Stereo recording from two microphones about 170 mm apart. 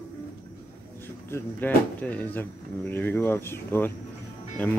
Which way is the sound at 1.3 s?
10° left (ahead or behind).